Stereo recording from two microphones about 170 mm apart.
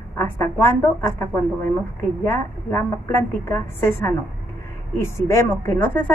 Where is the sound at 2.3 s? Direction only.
15° left (ahead or behind).